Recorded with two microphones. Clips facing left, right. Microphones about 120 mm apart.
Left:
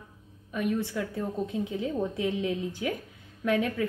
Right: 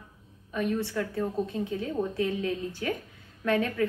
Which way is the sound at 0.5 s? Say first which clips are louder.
Even; 10° left (ahead or behind).